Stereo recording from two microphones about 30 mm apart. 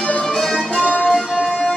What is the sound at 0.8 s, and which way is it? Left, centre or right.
Music, left.